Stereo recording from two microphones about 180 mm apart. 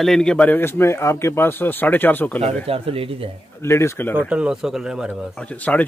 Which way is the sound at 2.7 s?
30° right (ahead or behind).